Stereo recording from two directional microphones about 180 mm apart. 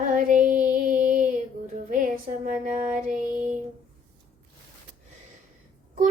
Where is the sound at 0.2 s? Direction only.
45° right (ahead or behind).